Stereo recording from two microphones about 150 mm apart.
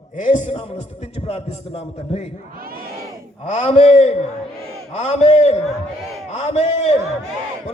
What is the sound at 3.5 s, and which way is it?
A man's voice, 50° left (ahead or behind).